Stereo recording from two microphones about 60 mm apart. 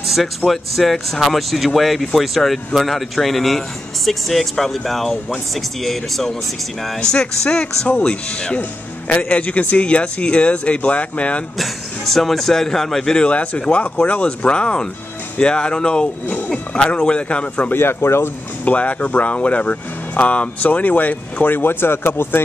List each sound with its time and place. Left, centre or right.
0.0 s a sound: centre
0.5 s speech: centre
9.1 s speech: left
11.5 s speech: centre; by 17.7 s left
17.7 s speech: left
18.7 s speech: left